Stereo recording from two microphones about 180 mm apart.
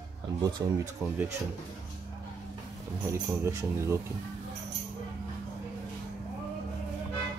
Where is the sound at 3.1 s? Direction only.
15° right (ahead or behind).